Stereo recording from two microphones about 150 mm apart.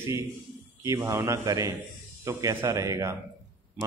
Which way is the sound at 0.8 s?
20° right (ahead or behind).